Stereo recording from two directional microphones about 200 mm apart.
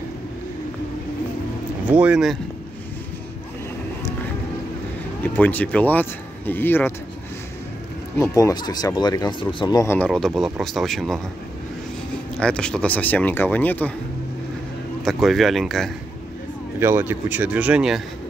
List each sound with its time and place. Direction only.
1.9 s speech: 5° right (ahead or behind)
5.2 s speech: 10° left (ahead or behind)
8.2 s speech: 15° left (ahead or behind)
9.9 s speech: 5° left (ahead or behind)
12.4 s speech: 5° left (ahead or behind)
15.0 s speech: centre (ahead or behind)
16.8 s speech: 10° right (ahead or behind)